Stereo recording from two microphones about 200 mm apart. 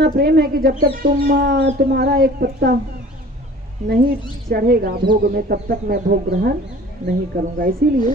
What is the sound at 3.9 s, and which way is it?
A woman's voice, 50° right (ahead or behind).